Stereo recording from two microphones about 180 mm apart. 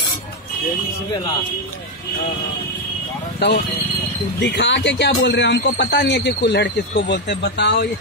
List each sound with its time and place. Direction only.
3.4 s speech: 70° left (ahead or behind)